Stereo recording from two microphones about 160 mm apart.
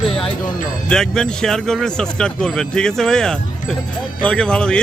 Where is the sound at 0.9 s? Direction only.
5° left (ahead or behind).